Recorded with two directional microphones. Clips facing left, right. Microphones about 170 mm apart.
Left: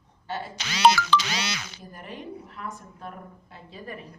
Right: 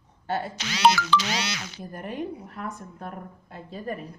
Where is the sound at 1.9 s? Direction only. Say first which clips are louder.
Right 6 dB; 50° right (ahead or behind).